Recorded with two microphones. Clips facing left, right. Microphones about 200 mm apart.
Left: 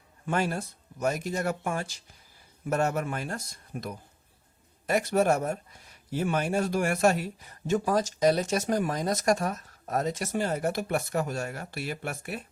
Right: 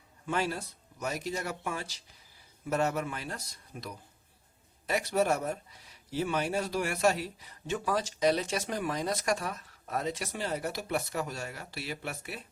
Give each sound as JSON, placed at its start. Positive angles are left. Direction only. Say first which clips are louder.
{"t": 0.3, "sound": "speech", "louder": "left 3 dB", "side_deg": 50}